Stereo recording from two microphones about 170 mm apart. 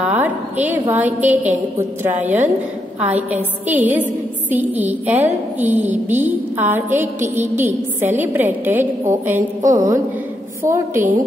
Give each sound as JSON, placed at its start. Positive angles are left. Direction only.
{"t": 0.0, "sound": "a woman's voice", "side_deg": -10}
{"t": 9.7, "sound": "a sound", "side_deg": -20}
{"t": 10.6, "sound": "a woman's voice", "side_deg": -15}